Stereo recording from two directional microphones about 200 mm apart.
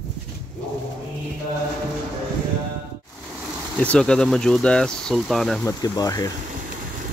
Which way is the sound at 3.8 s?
5° left (ahead or behind).